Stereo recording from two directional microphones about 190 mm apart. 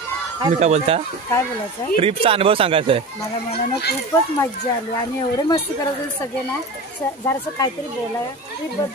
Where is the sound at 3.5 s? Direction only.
55° left (ahead or behind).